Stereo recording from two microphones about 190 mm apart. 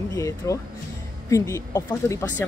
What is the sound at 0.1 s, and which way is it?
Speech, 15° left (ahead or behind).